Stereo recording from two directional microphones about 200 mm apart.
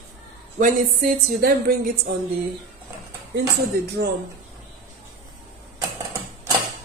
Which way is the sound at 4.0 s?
55° right (ahead or behind).